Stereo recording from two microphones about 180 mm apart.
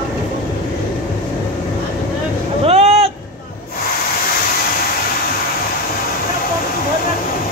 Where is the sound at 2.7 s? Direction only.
35° right (ahead or behind).